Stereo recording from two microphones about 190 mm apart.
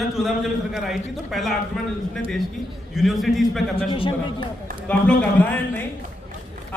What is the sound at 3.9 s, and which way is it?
Speech, 25° left (ahead or behind).